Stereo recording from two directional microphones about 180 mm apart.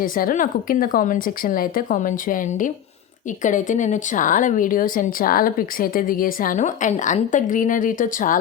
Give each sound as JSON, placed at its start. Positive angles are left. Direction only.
{"t": 0.0, "sound": "speech", "side_deg": 50}